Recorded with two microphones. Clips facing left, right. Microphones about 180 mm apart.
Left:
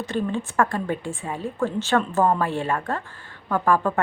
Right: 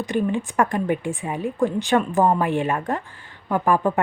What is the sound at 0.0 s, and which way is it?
A woman's voice, 15° right (ahead or behind).